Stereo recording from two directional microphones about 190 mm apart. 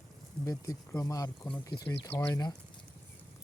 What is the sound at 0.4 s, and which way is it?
Speech, 20° left (ahead or behind).